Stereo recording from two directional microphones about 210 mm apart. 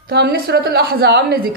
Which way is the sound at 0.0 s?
50° right (ahead or behind).